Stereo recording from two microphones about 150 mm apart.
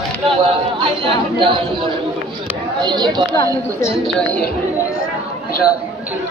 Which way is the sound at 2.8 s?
30° right (ahead or behind).